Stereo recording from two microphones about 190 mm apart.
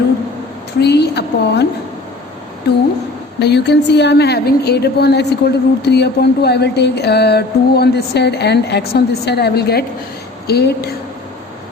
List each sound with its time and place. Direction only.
0.8 s a woman's voice: 60° left (ahead or behind)
3.4 s a woman's voice: 65° left (ahead or behind)